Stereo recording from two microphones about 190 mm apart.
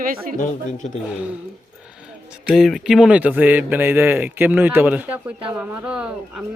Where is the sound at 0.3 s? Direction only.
40° left (ahead or behind).